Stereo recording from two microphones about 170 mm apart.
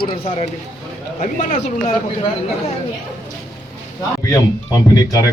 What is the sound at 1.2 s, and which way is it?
Speech, 45° left (ahead or behind).